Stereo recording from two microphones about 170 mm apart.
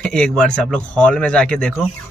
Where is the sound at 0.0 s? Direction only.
5° left (ahead or behind).